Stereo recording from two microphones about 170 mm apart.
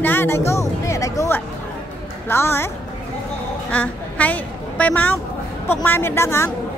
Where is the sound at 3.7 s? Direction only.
10° left (ahead or behind).